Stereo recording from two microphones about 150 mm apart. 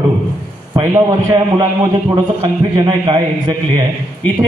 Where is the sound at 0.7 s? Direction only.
25° right (ahead or behind).